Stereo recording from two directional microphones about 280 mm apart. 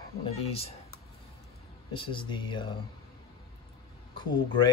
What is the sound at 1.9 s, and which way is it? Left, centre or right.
Speech, centre.